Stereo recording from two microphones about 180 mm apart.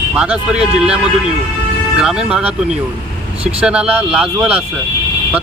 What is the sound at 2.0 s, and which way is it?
Speech, 5° right (ahead or behind).